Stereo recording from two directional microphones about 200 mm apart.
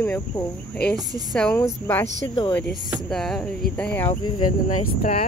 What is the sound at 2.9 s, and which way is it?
Speech, centre (ahead or behind).